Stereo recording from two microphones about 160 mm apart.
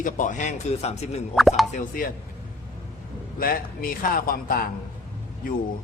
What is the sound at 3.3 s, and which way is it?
A man's voice, 65° left (ahead or behind).